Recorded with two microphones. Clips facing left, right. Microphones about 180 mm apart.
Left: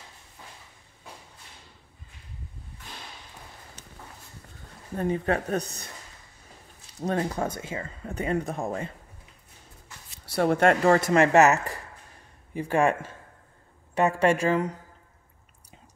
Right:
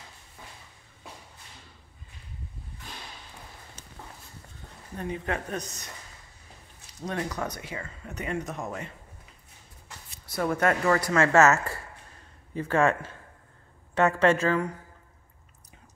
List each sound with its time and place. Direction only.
4.9 s speech: 40° left (ahead or behind)
7.0 s speech: 30° left (ahead or behind)
10.5 s speech: 30° left (ahead or behind)